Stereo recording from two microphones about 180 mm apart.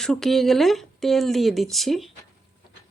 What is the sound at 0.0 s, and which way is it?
Speech, centre (ahead or behind).